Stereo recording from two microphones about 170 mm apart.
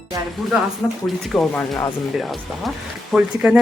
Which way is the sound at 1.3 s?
10° left (ahead or behind).